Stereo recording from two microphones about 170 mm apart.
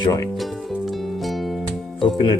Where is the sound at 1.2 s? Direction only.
Centre (ahead or behind).